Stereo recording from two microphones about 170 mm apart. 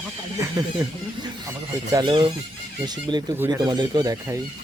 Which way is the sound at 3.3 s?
20° right (ahead or behind).